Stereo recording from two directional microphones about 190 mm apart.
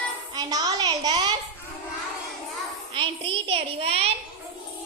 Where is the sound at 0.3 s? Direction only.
20° right (ahead or behind).